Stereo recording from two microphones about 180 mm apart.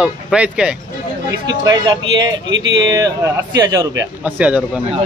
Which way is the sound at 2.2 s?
90° right.